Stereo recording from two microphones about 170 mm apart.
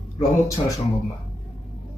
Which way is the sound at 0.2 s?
20° left (ahead or behind).